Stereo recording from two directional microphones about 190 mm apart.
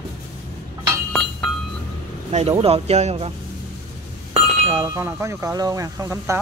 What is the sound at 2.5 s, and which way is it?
Speech, 30° right (ahead or behind).